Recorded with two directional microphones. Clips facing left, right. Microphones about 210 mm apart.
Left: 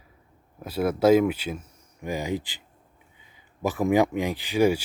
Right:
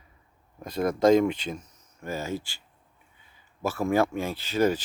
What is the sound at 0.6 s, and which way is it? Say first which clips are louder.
Speech: left 1 dB; 5° left (ahead or behind).